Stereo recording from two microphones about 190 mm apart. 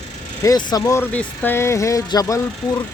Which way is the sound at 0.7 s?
15° left (ahead or behind).